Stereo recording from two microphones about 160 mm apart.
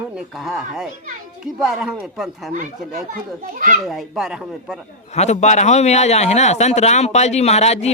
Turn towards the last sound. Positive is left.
turn(degrees=40)  # may be behind; listen again after turning